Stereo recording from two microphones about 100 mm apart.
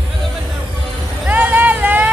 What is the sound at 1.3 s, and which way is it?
Vehicle, 15° right (ahead or behind).